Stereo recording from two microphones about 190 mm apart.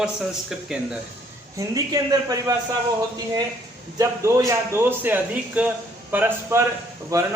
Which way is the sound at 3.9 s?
15° right (ahead or behind).